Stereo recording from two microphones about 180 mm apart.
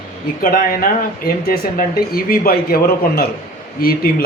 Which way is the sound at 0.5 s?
55° left (ahead or behind).